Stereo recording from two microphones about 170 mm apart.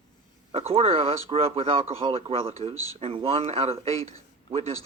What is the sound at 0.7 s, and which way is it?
Speech, 35° right (ahead or behind).